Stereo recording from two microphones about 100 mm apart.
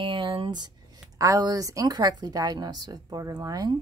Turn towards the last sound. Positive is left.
turn(degrees=-40)  # may be behind; listen again after turning